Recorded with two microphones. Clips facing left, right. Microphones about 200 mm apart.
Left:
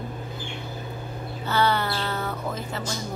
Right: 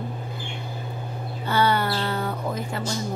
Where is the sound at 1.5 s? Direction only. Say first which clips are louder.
Right 2 dB; 10° right (ahead or behind).